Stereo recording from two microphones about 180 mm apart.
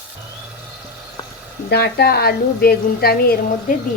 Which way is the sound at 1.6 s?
65° left (ahead or behind).